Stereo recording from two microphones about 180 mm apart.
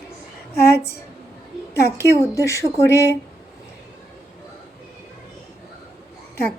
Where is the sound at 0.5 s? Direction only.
60° left (ahead or behind).